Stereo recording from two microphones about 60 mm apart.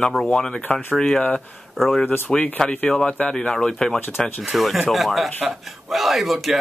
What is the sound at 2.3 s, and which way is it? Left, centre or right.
Speech, centre.